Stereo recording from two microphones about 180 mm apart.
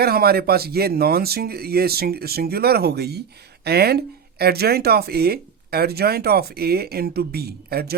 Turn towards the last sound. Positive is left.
turn(degrees=-60)  # may be behind; listen again after turning